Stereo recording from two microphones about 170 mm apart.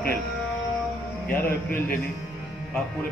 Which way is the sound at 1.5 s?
60° left (ahead or behind).